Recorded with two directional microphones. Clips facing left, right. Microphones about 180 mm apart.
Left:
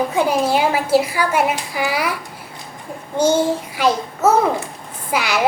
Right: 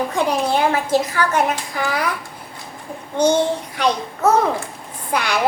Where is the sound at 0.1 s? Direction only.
5° left (ahead or behind).